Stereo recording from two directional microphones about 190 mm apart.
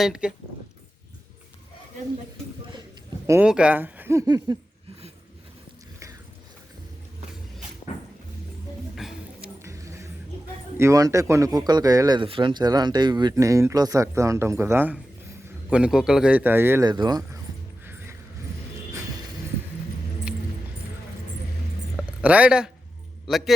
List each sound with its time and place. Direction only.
0.0 s speech: 5° right (ahead or behind)
3.2 s speech: 10° right (ahead or behind)
9.0 s music: centre (ahead or behind)
9.6 s a sound: 15° right (ahead or behind)
10.8 s speech: 15° right (ahead or behind)
22.2 s a man's voice: 5° right (ahead or behind)